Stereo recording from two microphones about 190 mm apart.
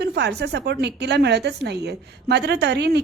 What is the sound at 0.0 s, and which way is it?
A woman's voice, 60° right (ahead or behind).